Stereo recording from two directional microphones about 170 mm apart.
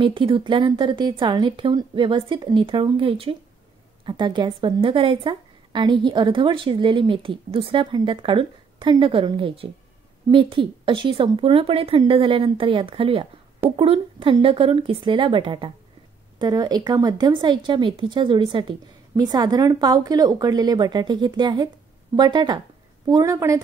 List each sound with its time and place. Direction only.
0.0 s a woman's voice: 30° right (ahead or behind)